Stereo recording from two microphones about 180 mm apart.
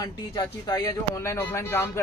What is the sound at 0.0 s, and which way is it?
Speech, 20° left (ahead or behind).